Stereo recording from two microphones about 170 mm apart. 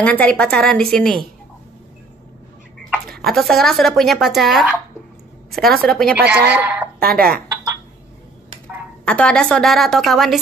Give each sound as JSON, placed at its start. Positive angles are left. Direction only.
{"t": 0.0, "sound": "a woman's voice", "side_deg": 5}
{"t": 2.9, "sound": "a woman's voice", "side_deg": 0}
{"t": 6.6, "sound": "a woman's voice", "side_deg": -10}
{"t": 7.0, "sound": "speech", "side_deg": -60}
{"t": 9.0, "sound": "a woman's voice", "side_deg": 5}